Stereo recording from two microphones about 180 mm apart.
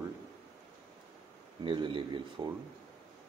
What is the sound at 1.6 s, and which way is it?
Speech, 30° right (ahead or behind).